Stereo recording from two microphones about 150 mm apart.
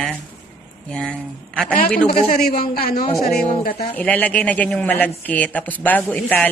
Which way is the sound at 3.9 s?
10° left (ahead or behind).